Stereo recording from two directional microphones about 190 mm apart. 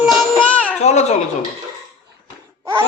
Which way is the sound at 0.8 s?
35° left (ahead or behind).